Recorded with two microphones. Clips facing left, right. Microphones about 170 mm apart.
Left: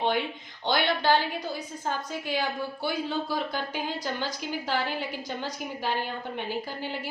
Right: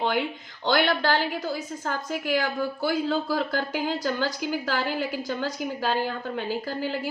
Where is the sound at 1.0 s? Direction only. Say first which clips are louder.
Even; 90° right.